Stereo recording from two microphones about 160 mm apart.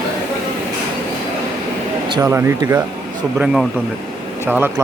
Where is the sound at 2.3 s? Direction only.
15° right (ahead or behind).